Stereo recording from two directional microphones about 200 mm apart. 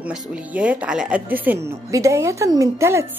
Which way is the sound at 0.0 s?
5° right (ahead or behind).